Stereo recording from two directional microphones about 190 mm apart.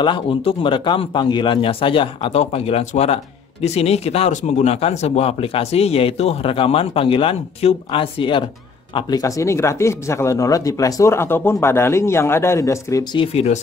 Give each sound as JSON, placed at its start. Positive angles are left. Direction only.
{"t": 0.0, "sound": "a man's voice", "side_deg": 25}
{"t": 13.2, "sound": "speech", "side_deg": 30}